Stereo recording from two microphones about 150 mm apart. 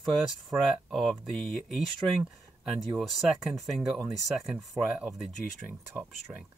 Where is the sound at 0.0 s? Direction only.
Centre (ahead or behind).